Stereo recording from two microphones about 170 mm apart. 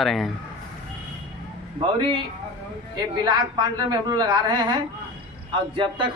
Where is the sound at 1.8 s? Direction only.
30° right (ahead or behind).